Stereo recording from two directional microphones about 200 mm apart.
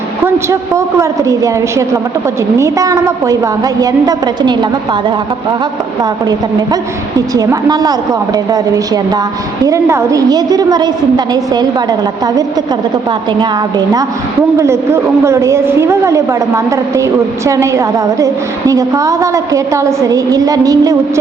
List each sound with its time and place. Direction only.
0.4 s a woman's voice: 15° right (ahead or behind)
6.0 s a woman's voice: 20° right (ahead or behind)